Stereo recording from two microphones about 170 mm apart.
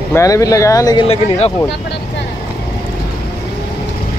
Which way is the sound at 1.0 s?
35° left (ahead or behind).